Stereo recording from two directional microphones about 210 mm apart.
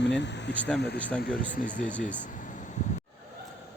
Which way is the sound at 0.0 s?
55° left (ahead or behind).